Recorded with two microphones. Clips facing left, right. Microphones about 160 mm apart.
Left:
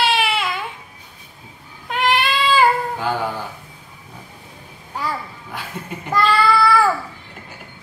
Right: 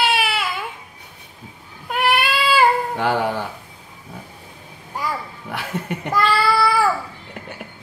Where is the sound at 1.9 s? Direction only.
10° right (ahead or behind).